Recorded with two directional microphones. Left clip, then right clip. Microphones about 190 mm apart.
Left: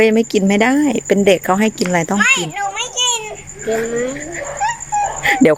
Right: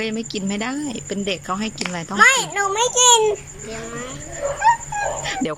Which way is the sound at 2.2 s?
30° right (ahead or behind).